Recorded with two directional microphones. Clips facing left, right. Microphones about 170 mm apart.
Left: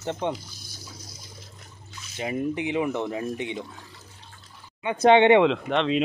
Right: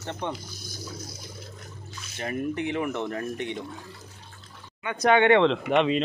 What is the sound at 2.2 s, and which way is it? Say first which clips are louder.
Speech: left 2 dB; 15° left (ahead or behind).